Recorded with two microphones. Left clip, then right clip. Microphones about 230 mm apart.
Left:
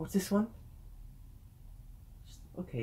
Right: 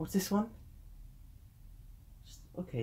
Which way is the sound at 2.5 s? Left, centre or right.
Centre.